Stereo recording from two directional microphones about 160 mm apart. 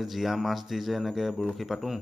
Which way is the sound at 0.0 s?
Centre (ahead or behind).